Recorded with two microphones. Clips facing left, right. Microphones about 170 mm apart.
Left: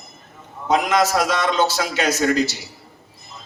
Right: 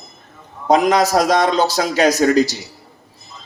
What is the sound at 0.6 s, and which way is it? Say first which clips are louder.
A man's voice: right 4 dB; 40° right (ahead or behind).